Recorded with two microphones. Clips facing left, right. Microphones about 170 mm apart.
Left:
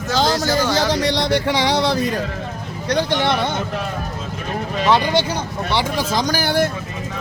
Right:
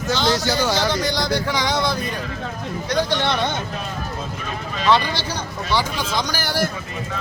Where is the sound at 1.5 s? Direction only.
30° left (ahead or behind).